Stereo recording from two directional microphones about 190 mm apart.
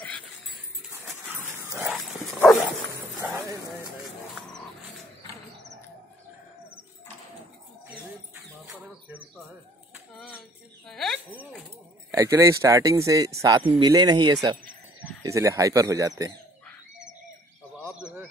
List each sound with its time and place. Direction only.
1.5 s dog: 15° right (ahead or behind)
3.2 s clip-clop: 10° right (ahead or behind)
8.6 s bird: 10° right (ahead or behind)
10.1 s a sound: 10° left (ahead or behind)
10.9 s cricket: centre (ahead or behind)
12.1 s speech: 15° right (ahead or behind)
17.9 s bird: 5° right (ahead or behind)